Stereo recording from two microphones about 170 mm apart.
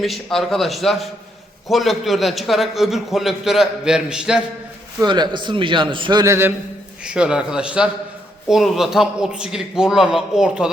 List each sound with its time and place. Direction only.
0.0 s a man's voice: centre (ahead or behind)
5.0 s a man's voice: 25° right (ahead or behind)
7.0 s a man's voice: 5° right (ahead or behind)